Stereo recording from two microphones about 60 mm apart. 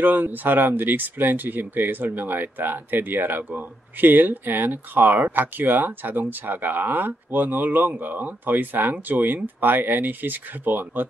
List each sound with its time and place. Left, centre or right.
0.0 s speech: right